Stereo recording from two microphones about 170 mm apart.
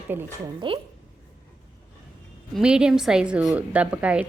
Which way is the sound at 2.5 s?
5° right (ahead or behind).